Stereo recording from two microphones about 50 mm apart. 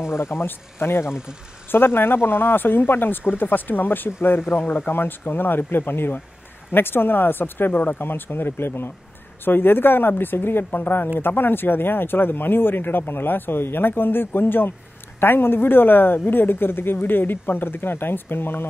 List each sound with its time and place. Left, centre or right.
0.1 s speech: left
8.0 s speech: left